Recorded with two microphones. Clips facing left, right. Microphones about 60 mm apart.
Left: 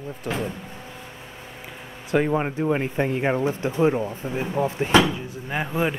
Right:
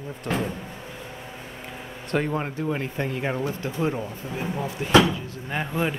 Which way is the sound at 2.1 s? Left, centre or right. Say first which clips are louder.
Left 4 dB; centre.